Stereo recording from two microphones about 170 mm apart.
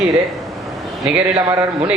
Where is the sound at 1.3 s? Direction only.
20° right (ahead or behind).